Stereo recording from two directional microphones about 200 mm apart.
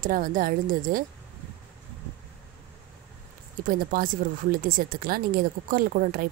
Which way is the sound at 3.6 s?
45° right (ahead or behind).